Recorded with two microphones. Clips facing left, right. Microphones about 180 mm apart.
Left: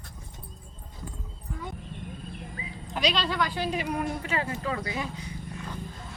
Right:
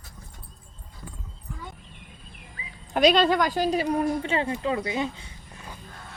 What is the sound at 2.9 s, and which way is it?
A woman's voice, 50° right (ahead or behind).